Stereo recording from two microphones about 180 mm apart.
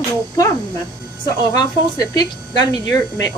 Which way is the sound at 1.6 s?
20° left (ahead or behind).